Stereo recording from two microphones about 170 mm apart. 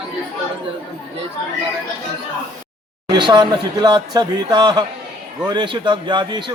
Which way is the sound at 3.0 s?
25° right (ahead or behind).